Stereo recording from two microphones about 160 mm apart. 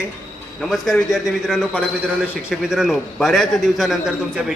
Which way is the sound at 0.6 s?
Centre (ahead or behind).